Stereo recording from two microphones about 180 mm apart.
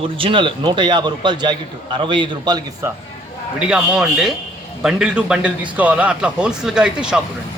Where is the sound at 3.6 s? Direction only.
5° right (ahead or behind).